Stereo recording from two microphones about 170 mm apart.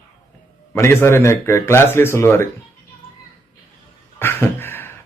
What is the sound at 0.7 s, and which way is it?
A man's voice, 15° left (ahead or behind).